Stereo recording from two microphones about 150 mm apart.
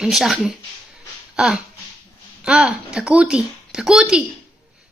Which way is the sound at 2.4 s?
5° right (ahead or behind).